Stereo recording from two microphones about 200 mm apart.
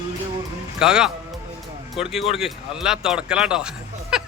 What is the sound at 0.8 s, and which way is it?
Speech, 5° right (ahead or behind).